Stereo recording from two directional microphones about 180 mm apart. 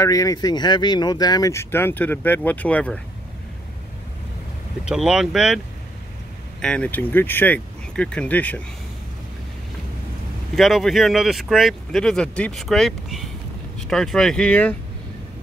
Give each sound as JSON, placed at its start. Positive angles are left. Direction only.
{"t": 0.0, "sound": "speech", "side_deg": 20}
{"t": 4.8, "sound": "speech", "side_deg": -5}
{"t": 6.6, "sound": "speech", "side_deg": 5}
{"t": 10.5, "sound": "speech", "side_deg": 0}